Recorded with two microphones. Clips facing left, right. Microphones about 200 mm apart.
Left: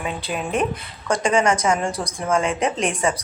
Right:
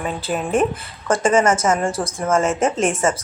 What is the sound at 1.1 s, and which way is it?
A woman's voice, 5° right (ahead or behind).